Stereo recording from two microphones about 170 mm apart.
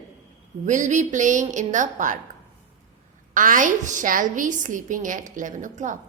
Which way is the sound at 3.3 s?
50° right (ahead or behind).